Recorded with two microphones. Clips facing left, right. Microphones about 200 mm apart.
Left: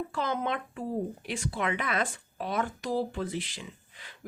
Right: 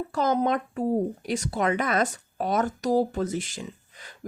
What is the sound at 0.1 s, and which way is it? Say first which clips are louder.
Speech: right 7 dB; 40° right (ahead or behind).